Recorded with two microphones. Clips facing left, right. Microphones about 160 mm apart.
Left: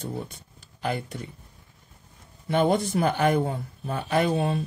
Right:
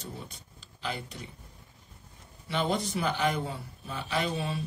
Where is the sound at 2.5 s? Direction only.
50° left (ahead or behind).